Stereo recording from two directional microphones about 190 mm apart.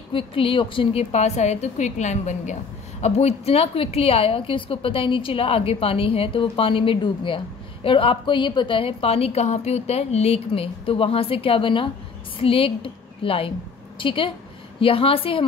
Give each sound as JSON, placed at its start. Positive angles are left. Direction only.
{"t": 0.1, "sound": "a woman's voice", "side_deg": 30}